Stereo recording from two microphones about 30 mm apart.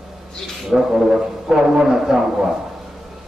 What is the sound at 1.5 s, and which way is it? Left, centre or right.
Speech, right.